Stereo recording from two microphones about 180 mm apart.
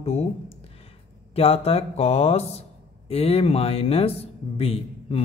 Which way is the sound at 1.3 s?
35° left (ahead or behind).